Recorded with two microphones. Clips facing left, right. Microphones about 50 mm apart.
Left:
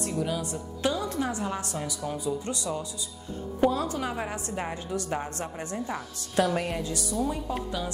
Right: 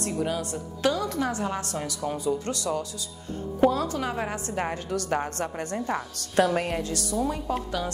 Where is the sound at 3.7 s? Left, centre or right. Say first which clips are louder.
Right 2 dB; right.